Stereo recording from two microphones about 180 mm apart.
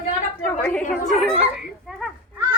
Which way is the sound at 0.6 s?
5° left (ahead or behind).